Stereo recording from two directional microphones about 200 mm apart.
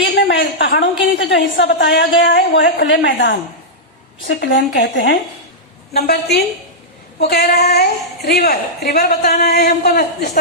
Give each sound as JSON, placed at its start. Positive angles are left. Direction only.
{"t": 0.2, "sound": "a woman's voice", "side_deg": 60}